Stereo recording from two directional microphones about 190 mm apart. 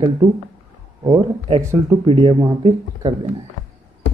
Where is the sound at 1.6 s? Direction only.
15° right (ahead or behind).